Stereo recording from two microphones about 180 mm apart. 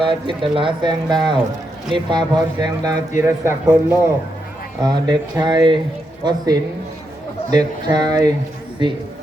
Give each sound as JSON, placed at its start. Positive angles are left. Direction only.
{"t": 0.0, "sound": "a man's voice", "side_deg": -25}